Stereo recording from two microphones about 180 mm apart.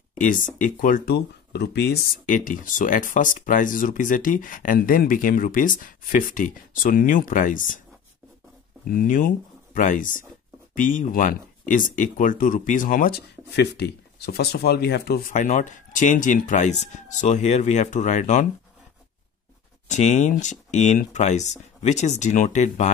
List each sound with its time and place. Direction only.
0.2 s speech: 45° left (ahead or behind); by 2.0 s 65° left (ahead or behind)
2.2 s speech: 45° left (ahead or behind)
8.8 s speech: 50° left (ahead or behind)
19.9 s speech: 40° left (ahead or behind)